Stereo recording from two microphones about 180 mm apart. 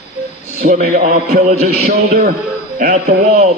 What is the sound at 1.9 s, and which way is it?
Speech, 55° right (ahead or behind).